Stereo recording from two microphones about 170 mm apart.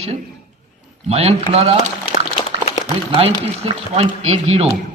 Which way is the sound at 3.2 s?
35° right (ahead or behind).